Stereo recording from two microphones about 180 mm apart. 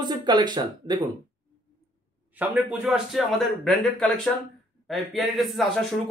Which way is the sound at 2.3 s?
10° right (ahead or behind).